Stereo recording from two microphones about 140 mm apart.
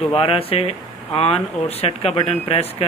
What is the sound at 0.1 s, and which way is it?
Speech, 40° left (ahead or behind).